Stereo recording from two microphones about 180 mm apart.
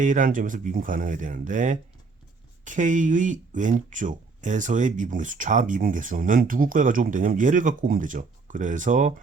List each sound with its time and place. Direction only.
0.0 s speech: 45° right (ahead or behind)